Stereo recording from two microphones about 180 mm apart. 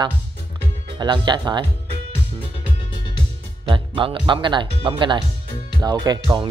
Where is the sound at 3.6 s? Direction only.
30° right (ahead or behind).